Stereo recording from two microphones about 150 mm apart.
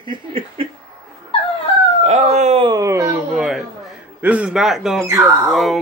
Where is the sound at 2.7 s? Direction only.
20° right (ahead or behind).